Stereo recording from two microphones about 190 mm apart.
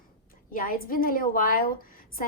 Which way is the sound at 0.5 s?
50° left (ahead or behind).